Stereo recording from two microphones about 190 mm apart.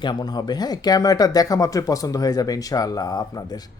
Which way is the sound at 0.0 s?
20° left (ahead or behind).